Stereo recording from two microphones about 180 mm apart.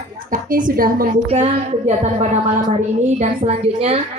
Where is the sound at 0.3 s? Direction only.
50° right (ahead or behind).